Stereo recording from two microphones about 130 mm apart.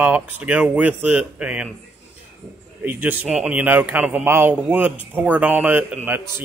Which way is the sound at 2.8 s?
15° right (ahead or behind).